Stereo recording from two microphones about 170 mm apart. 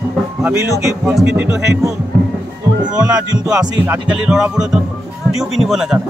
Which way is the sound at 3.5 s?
5° right (ahead or behind).